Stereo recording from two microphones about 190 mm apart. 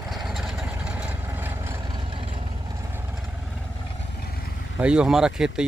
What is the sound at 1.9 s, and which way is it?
Vehicle, 25° right (ahead or behind).